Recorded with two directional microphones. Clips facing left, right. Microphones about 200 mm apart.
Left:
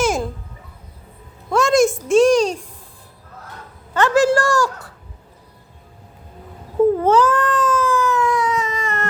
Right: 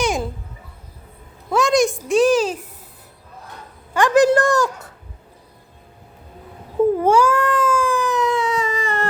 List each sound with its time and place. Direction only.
0.0 s babbling: centre (ahead or behind)
1.5 s a sound: centre (ahead or behind)
2.0 s a child's voice: centre (ahead or behind)
3.9 s a woman's voice: 15° right (ahead or behind)
6.9 s cat: 10° right (ahead or behind); by 9.0 s 30° right (ahead or behind)